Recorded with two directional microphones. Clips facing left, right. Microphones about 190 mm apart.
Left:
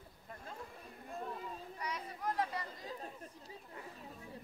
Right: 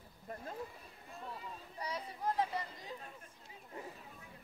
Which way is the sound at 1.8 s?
30° right (ahead or behind).